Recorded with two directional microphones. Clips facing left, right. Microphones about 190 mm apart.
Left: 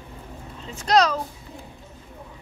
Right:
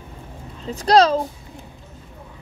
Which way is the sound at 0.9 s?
30° right (ahead or behind).